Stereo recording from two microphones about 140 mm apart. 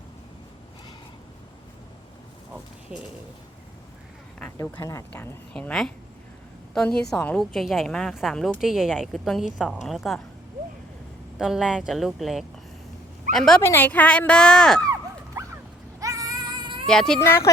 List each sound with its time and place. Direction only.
2.9 s speech: 5° right (ahead or behind)
4.5 s speech: 25° left (ahead or behind)
5.1 s a woman's voice: 10° left (ahead or behind)
11.3 s a woman's voice: 5° right (ahead or behind)
13.6 s speech: 15° left (ahead or behind)
14.8 s dog: 25° right (ahead or behind)
16.0 s a sound: 25° right (ahead or behind)
16.8 s a woman's voice: 5° left (ahead or behind)
17.2 s speech: 20° left (ahead or behind)